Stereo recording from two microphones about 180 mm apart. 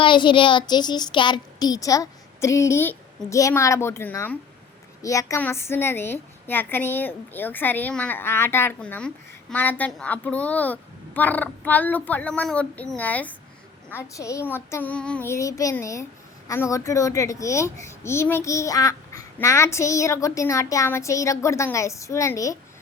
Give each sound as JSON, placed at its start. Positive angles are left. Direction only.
{"t": 0.0, "sound": "a woman's voice", "side_deg": 25}